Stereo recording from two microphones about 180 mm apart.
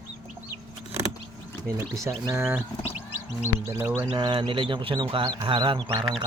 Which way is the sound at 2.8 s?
35° left (ahead or behind).